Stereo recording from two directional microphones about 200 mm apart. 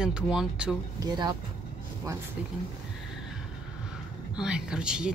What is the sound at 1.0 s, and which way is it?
Speech, 20° right (ahead or behind).